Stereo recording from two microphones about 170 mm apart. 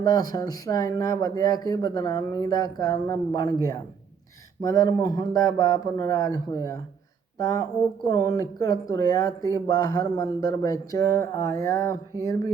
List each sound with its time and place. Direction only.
0.0 s speech: 20° left (ahead or behind)
4.6 s speech: 20° left (ahead or behind)